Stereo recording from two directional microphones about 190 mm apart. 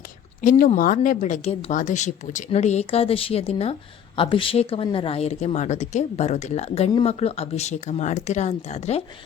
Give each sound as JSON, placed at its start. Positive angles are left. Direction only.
{"t": 0.4, "sound": "speech", "side_deg": 45}